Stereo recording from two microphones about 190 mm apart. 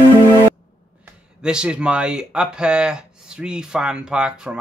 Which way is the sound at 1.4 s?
5° right (ahead or behind).